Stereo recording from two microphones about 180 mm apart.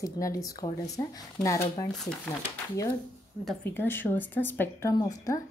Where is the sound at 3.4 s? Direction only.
10° left (ahead or behind).